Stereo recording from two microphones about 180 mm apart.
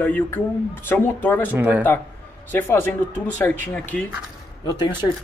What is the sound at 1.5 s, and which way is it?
Speech, 10° right (ahead or behind).